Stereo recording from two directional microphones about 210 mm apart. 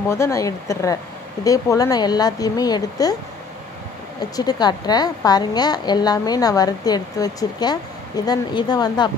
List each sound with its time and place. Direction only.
0.1 s speech: 15° left (ahead or behind)
4.4 s a woman's voice: 20° left (ahead or behind)